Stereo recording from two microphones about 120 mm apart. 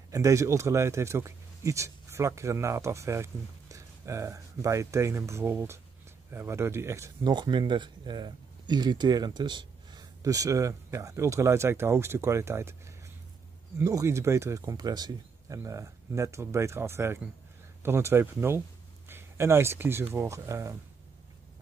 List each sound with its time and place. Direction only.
0.1 s speech: 25° right (ahead or behind)
7.2 s speech: 40° right (ahead or behind)